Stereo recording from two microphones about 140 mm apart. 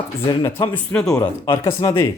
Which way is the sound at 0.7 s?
10° left (ahead or behind).